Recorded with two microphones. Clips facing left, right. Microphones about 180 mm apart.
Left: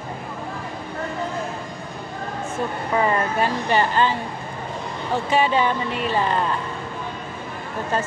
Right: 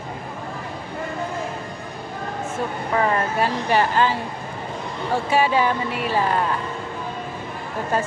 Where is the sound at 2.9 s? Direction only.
Centre (ahead or behind).